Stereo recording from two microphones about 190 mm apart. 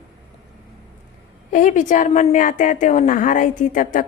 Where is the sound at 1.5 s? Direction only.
40° left (ahead or behind).